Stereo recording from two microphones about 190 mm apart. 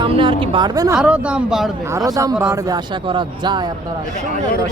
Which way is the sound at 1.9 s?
15° right (ahead or behind).